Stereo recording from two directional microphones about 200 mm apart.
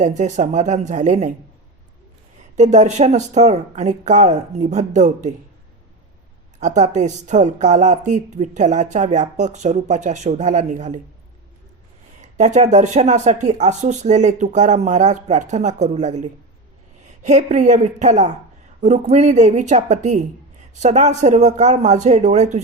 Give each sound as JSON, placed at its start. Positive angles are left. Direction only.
{"t": 0.0, "sound": "a woman's voice", "side_deg": -35}
{"t": 2.6, "sound": "a woman's voice", "side_deg": -35}
{"t": 6.6, "sound": "a woman's voice", "side_deg": -35}
{"t": 12.2, "sound": "a woman's voice", "side_deg": -35}